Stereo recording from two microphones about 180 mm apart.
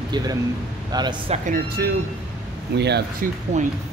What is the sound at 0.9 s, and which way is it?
Speech, 25° right (ahead or behind).